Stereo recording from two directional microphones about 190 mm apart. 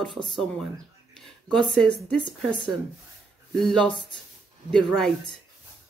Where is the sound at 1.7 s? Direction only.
Centre (ahead or behind).